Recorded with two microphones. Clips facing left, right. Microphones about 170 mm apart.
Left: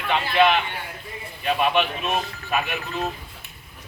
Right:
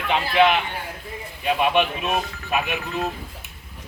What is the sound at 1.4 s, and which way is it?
A man's voice, 15° right (ahead or behind).